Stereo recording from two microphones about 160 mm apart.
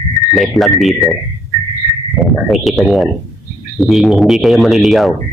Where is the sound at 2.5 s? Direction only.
Centre (ahead or behind).